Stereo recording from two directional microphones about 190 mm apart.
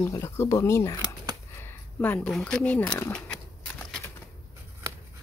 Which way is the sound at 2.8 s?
20° left (ahead or behind).